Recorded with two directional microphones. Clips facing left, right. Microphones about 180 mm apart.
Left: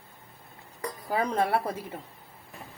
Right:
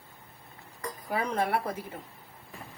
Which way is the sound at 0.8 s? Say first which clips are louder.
Left 3 dB; 35° left (ahead or behind).